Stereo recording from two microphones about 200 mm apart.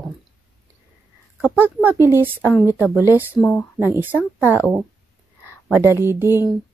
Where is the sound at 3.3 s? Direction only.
10° left (ahead or behind).